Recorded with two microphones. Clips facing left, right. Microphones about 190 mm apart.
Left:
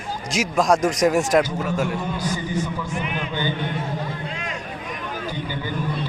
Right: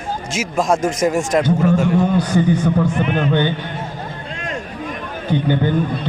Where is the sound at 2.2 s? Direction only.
60° right (ahead or behind).